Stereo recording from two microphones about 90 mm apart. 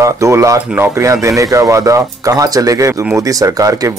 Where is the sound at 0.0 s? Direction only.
35° right (ahead or behind).